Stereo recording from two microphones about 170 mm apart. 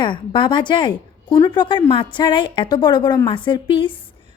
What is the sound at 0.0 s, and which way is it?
A woman's voice, 30° left (ahead or behind).